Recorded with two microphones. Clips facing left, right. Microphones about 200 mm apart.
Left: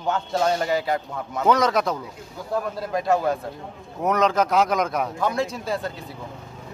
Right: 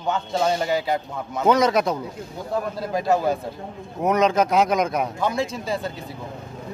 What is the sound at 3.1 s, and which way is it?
Speech, 5° right (ahead or behind).